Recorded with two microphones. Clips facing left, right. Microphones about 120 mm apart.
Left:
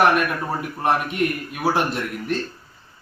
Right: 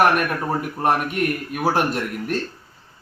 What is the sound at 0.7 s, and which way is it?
Speech, 5° right (ahead or behind).